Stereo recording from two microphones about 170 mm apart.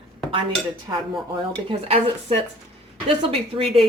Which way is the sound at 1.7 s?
35° right (ahead or behind).